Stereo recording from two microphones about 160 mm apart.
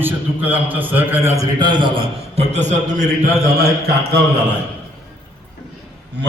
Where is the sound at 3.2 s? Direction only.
75° right (ahead or behind).